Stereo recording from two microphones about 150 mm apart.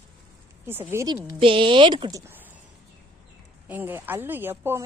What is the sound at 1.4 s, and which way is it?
Speech, 35° right (ahead or behind).